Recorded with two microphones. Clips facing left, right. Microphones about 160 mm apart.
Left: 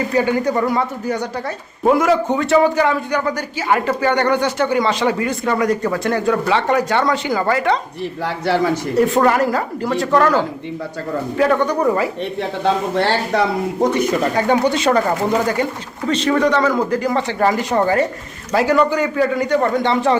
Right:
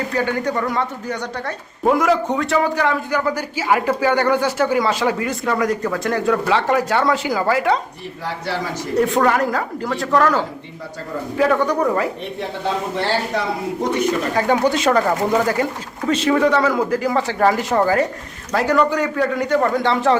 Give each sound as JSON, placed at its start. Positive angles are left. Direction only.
{"t": 0.1, "sound": "a man's voice", "side_deg": 10}
{"t": 8.2, "sound": "a man's voice", "side_deg": 65}
{"t": 9.0, "sound": "a man's voice", "side_deg": 0}
{"t": 11.3, "sound": "a man's voice", "side_deg": 0}
{"t": 13.3, "sound": "a man's voice", "side_deg": 70}
{"t": 14.3, "sound": "a man's voice", "side_deg": -5}